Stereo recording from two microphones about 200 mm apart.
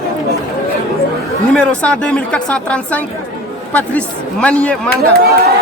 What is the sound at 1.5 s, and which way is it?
A man's voice, 5° left (ahead or behind).